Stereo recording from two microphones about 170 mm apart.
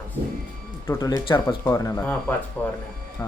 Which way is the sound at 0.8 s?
20° left (ahead or behind).